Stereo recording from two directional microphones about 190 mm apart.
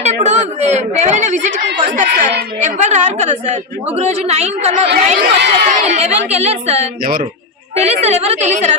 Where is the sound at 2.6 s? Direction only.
40° right (ahead or behind).